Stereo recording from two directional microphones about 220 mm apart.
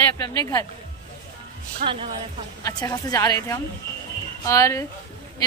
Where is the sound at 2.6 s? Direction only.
15° left (ahead or behind).